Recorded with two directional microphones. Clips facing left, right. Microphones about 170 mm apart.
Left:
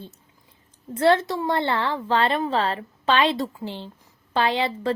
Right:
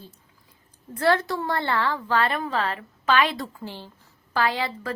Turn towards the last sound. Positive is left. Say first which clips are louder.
# left 3 dB
turn(degrees=25)  # may be behind; listen again after turning